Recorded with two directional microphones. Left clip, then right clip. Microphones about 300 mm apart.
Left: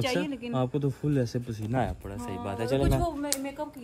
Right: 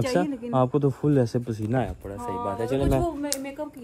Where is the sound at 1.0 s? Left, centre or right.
Right.